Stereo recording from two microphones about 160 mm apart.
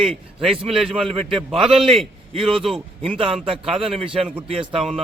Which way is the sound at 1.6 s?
Centre (ahead or behind).